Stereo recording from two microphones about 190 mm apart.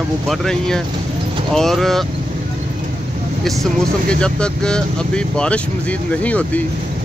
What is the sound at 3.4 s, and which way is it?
Speech, 5° left (ahead or behind).